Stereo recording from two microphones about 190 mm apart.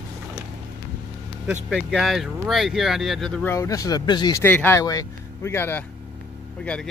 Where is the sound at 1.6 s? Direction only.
Centre (ahead or behind).